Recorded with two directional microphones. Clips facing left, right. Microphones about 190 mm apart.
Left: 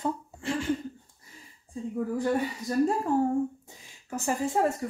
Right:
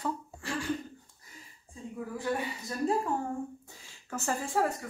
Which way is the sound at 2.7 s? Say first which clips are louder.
Left 11 dB; 35° left (ahead or behind).